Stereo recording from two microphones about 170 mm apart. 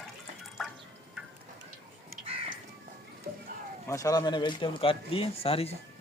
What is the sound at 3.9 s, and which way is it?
Speech, 20° left (ahead or behind).